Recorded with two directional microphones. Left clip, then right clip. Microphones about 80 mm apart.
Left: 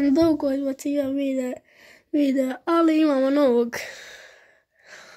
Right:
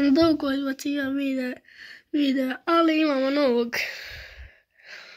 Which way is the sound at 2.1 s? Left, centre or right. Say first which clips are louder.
Left 2 dB; left.